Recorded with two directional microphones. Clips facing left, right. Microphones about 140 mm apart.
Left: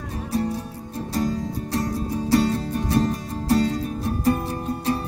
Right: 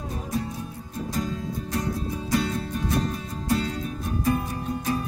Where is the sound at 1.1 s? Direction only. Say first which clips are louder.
Left 5 dB; 35° left (ahead or behind).